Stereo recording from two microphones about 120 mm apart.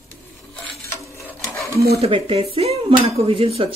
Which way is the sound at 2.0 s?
50° right (ahead or behind).